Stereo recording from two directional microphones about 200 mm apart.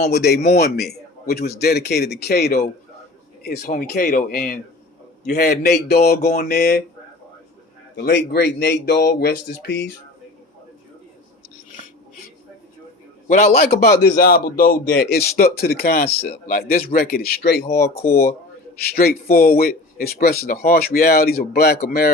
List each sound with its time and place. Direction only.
0.0 s speech: 55° left (ahead or behind)
7.9 s speech: 55° left (ahead or behind)
13.2 s speech: 45° left (ahead or behind)